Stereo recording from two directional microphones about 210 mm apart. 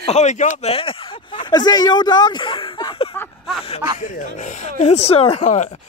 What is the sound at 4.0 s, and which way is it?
Speech, 35° left (ahead or behind).